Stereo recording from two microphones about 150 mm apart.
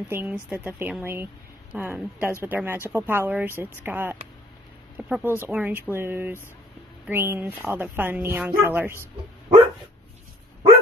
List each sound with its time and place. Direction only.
0.1 s speech: 10° right (ahead or behind)